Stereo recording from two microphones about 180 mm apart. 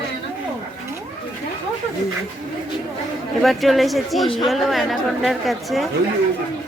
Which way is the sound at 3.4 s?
Centre (ahead or behind).